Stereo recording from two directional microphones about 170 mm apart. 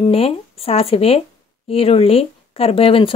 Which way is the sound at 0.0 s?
35° left (ahead or behind).